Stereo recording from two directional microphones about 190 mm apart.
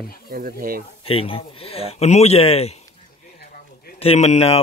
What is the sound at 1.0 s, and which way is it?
Speech, 30° left (ahead or behind).